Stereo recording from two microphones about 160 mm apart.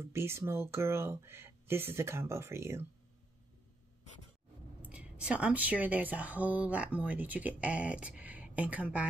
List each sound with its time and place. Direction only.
0.0 s speech: 15° right (ahead or behind)
4.8 s speech: 5° right (ahead or behind)